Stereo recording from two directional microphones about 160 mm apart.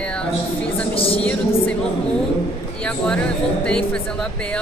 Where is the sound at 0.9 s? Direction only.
35° left (ahead or behind).